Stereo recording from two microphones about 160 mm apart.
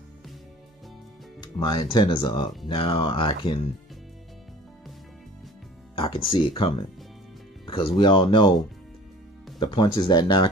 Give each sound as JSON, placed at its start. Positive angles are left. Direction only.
{"t": 1.4, "sound": "speech", "side_deg": 25}
{"t": 5.9, "sound": "speech", "side_deg": 35}
{"t": 9.6, "sound": "speech", "side_deg": 30}